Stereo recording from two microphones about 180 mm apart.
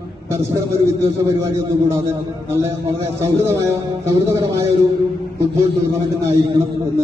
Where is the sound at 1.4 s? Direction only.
15° right (ahead or behind).